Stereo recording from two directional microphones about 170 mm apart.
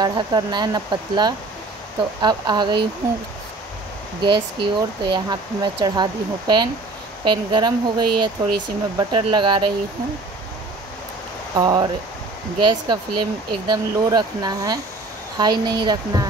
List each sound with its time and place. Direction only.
0.0 s speech: 25° right (ahead or behind)
4.2 s speech: 25° right (ahead or behind)
11.5 s speech: 25° right (ahead or behind)